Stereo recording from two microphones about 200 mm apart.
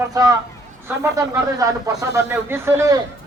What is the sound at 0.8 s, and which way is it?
Speech, 15° right (ahead or behind).